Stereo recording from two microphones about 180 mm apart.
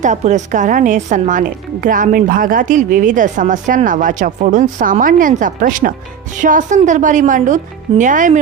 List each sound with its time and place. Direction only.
0.0 s a woman's voice: 40° right (ahead or behind)